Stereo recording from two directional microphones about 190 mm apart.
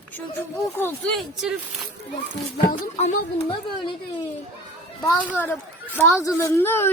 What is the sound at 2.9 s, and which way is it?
Speech, 30° left (ahead or behind).